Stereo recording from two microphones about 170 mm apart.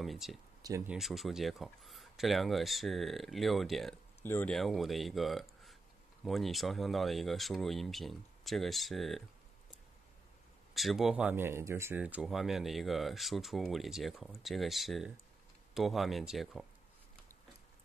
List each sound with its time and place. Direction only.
0.0 s speech: centre (ahead or behind)
0.6 s speech: 20° right (ahead or behind)
0.8 s speech: centre (ahead or behind)
4.2 s speech: 10° left (ahead or behind)
4.6 s speech: centre (ahead or behind)
10.7 s speech: centre (ahead or behind)